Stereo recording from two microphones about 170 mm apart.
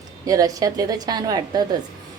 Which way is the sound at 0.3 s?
20° right (ahead or behind).